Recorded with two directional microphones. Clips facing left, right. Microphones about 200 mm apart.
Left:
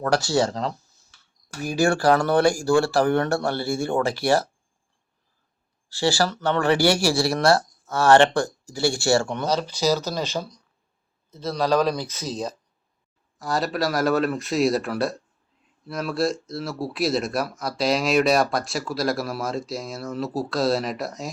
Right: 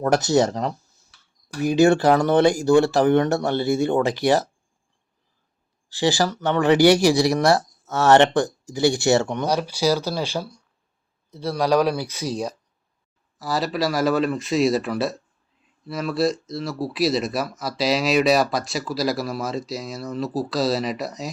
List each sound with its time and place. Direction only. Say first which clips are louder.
0.0 s speech: right 3 dB; 20° right (ahead or behind)
5.9 s speech: right 1 dB; 15° right (ahead or behind); by 21.2 s centre (ahead or behind)